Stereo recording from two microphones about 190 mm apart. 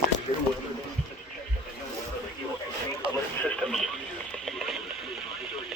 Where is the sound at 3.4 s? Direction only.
Centre (ahead or behind).